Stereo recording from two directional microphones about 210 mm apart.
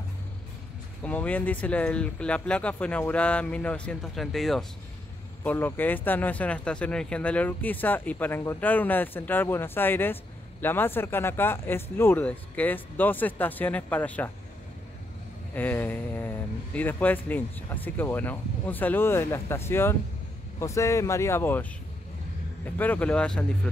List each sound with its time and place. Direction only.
1.0 s speech: 5° left (ahead or behind)
15.5 s speech: 10° left (ahead or behind)
22.8 s speech: 5° left (ahead or behind)